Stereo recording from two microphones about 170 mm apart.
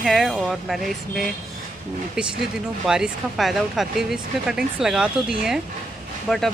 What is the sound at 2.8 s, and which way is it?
Speech, 5° right (ahead or behind).